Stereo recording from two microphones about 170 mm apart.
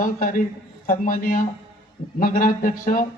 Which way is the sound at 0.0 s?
55° left (ahead or behind).